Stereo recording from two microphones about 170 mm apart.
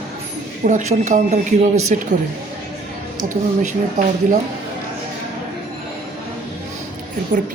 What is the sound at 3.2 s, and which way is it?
Speech, 45° right (ahead or behind).